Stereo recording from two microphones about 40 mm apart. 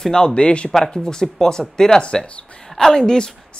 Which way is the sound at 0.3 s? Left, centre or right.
Left.